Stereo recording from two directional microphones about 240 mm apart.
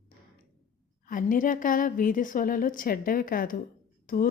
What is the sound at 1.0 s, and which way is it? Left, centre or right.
A woman's voice, left.